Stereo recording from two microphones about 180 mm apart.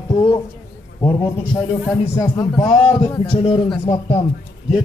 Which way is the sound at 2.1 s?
20° left (ahead or behind).